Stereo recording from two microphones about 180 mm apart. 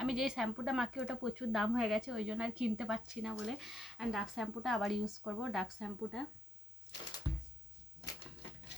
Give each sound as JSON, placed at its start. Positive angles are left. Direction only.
{"t": 0.0, "sound": "speech", "side_deg": 0}